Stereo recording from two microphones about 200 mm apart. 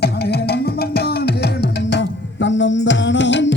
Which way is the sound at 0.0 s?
55° left (ahead or behind).